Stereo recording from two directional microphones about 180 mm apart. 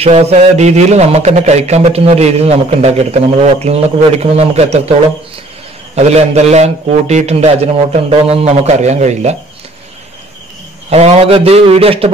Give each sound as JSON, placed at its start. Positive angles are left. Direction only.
{"t": 0.0, "sound": "a man's voice", "side_deg": -35}
{"t": 5.9, "sound": "a man's voice", "side_deg": -35}
{"t": 10.9, "sound": "a man's voice", "side_deg": -35}